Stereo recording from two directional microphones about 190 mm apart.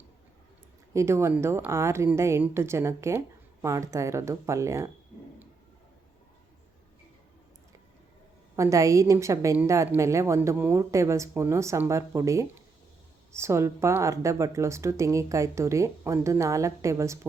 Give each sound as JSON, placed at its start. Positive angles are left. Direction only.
{"t": 0.9, "sound": "a woman's voice", "side_deg": -15}
{"t": 8.5, "sound": "a woman's voice", "side_deg": -15}